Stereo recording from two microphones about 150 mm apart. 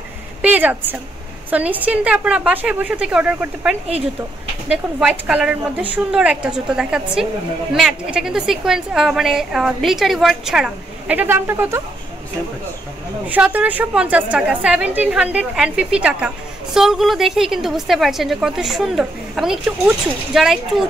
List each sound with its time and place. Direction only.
0.4 s a sound: 10° right (ahead or behind)
1.5 s a woman's voice: 10° right (ahead or behind)
13.3 s a woman's voice: 10° right (ahead or behind)